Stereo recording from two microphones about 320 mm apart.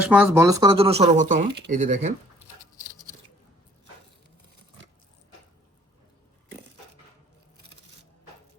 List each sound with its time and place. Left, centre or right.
0.1 s speech: centre; by 2.1 s right